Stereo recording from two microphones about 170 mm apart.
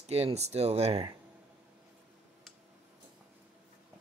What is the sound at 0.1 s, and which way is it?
Speech, 40° right (ahead or behind).